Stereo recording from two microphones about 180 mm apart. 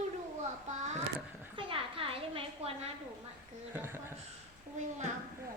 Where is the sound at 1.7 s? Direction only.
30° right (ahead or behind).